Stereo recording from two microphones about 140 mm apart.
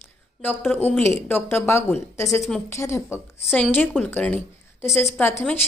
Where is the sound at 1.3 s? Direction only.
15° left (ahead or behind).